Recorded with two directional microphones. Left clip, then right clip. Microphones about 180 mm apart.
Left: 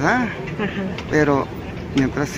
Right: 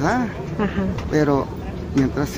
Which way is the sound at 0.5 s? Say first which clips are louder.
Right 4 dB; 20° right (ahead or behind).